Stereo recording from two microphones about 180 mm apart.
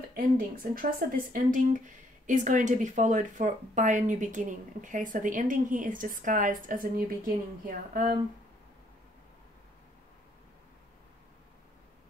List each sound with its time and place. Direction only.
0.1 s speech: 55° right (ahead or behind)